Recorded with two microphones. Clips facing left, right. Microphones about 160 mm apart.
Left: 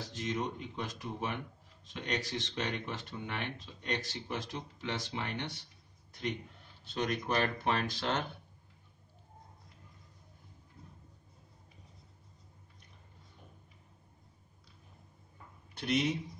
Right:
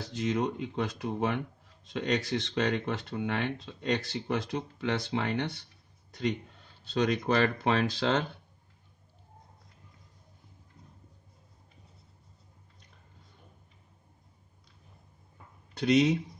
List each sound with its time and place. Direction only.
0.0 s speech: 85° right
6.9 s speech: 85° right
15.8 s a man's voice: 80° right